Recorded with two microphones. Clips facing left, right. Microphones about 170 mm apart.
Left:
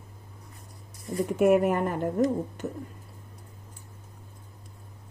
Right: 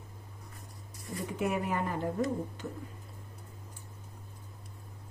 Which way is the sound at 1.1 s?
50° left (ahead or behind).